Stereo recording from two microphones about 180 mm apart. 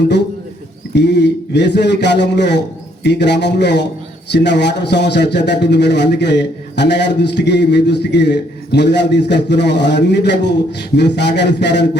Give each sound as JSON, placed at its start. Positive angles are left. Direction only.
{"t": 0.9, "sound": "a man's voice", "side_deg": 70}